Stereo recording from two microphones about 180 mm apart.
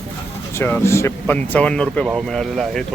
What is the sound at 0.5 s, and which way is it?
Speech, 15° left (ahead or behind).